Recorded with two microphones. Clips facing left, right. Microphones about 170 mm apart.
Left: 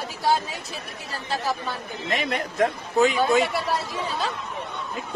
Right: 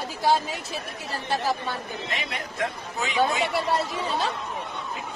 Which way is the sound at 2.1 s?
45° left (ahead or behind).